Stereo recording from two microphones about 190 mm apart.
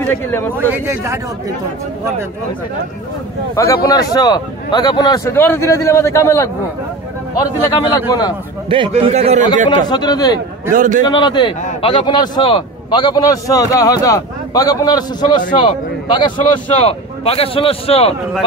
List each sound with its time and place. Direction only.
0.0 s a man's voice: 10° left (ahead or behind)
0.7 s a man's voice: 15° right (ahead or behind)
3.5 s a man's voice: 15° left (ahead or behind)
8.6 s a man's voice: 30° right (ahead or behind)
9.7 s a man's voice: 20° left (ahead or behind)
10.7 s a man's voice: 40° right (ahead or behind)
11.1 s a man's voice: 25° left (ahead or behind)